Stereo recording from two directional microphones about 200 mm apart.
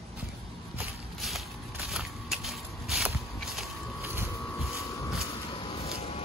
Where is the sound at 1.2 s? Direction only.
Centre (ahead or behind).